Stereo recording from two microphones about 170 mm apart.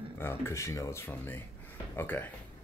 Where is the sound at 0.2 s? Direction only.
15° left (ahead or behind).